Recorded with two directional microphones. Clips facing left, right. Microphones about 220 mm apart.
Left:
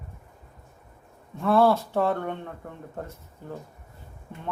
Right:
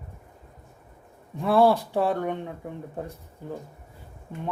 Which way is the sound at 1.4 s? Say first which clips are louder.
Right 1 dB; 15° right (ahead or behind).